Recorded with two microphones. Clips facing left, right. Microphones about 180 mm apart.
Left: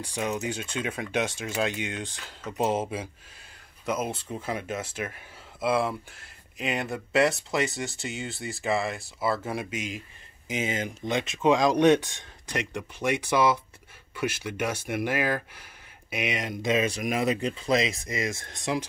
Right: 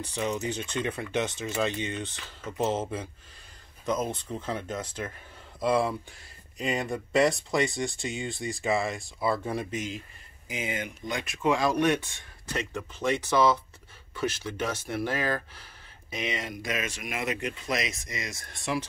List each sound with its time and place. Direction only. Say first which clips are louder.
0.0 s speech: even; 10° left (ahead or behind)
10.5 s speech: left 4 dB; 25° left (ahead or behind)